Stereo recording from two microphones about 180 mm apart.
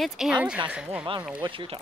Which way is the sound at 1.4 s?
25° right (ahead or behind).